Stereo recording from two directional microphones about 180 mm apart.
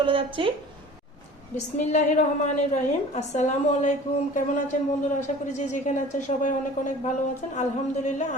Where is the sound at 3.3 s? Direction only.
40° left (ahead or behind).